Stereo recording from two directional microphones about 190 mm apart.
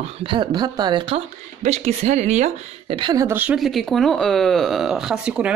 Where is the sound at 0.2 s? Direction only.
25° right (ahead or behind).